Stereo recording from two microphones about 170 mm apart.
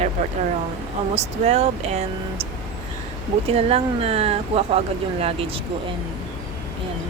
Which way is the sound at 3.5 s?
35° right (ahead or behind).